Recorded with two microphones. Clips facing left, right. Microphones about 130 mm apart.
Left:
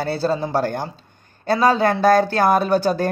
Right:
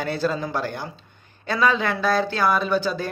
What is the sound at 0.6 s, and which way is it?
Speech, 45° left (ahead or behind).